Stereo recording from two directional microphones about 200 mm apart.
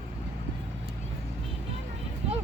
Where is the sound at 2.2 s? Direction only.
30° right (ahead or behind).